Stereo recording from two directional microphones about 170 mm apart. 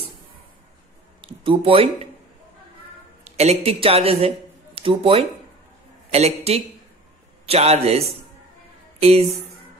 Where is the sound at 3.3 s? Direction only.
40° right (ahead or behind).